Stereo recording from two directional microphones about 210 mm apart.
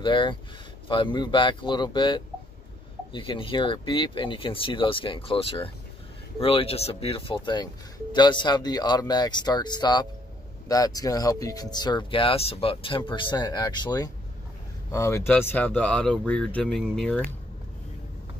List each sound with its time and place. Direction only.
0.0 s speech: 20° left (ahead or behind); by 17.3 s 5° left (ahead or behind)